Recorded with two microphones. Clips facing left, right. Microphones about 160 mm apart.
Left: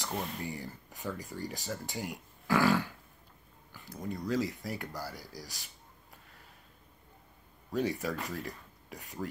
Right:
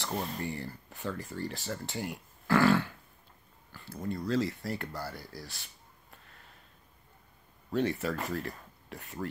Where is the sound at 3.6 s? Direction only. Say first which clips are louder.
Right 2 dB; 15° left (ahead or behind).